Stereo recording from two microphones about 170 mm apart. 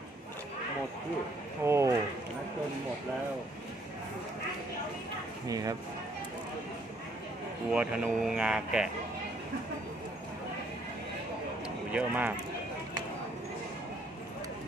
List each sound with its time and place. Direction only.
1.6 s a sound: 15° right (ahead or behind)
5.5 s speech: 20° right (ahead or behind)
7.7 s speech: 5° right (ahead or behind)
11.9 s speech: 5° right (ahead or behind)